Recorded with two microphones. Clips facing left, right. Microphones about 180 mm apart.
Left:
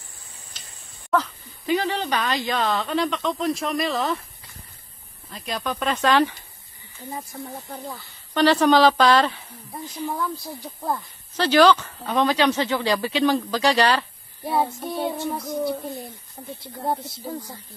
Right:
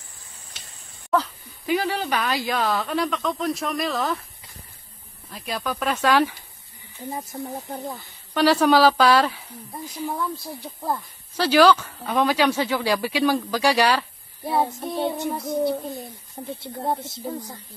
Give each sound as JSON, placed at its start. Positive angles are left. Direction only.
{"t": 1.1, "sound": "speech", "side_deg": -5}
{"t": 5.3, "sound": "speech", "side_deg": -5}
{"t": 7.2, "sound": "speech", "side_deg": -20}
{"t": 8.4, "sound": "speech", "side_deg": -5}
{"t": 16.4, "sound": "speech", "side_deg": -25}